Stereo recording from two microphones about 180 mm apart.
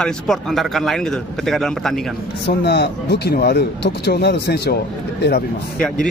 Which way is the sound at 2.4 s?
65° left (ahead or behind).